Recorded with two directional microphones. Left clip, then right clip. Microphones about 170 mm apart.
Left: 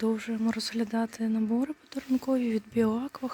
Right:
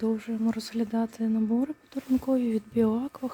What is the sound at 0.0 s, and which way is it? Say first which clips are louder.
Speech: even; 5° right (ahead or behind).